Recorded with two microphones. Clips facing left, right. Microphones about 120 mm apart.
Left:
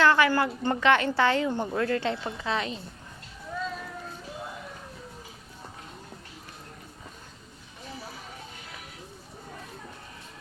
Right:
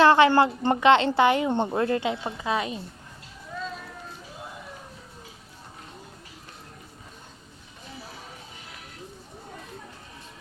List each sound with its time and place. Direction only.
0.0 s a woman's voice: 25° right (ahead or behind)
2.0 s speech: 15° right (ahead or behind)